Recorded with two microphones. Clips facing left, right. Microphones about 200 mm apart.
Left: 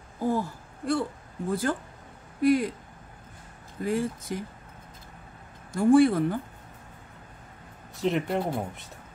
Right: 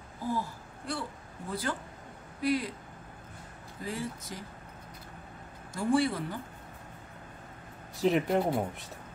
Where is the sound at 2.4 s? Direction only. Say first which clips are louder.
Left 7 dB; 50° left (ahead or behind).